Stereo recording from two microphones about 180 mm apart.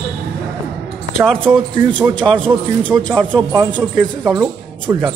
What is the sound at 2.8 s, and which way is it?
Speech, 5° left (ahead or behind).